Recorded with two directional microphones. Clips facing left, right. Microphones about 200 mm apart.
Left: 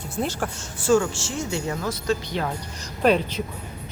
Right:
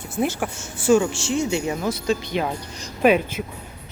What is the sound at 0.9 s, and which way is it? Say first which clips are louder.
Speech: right 3 dB; 15° right (ahead or behind).